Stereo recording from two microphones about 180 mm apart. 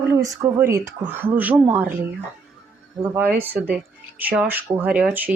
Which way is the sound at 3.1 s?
10° right (ahead or behind).